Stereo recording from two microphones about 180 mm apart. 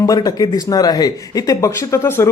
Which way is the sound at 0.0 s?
20° left (ahead or behind).